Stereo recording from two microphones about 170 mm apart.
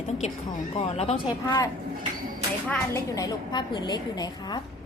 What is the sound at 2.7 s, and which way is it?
A woman's voice, 20° left (ahead or behind).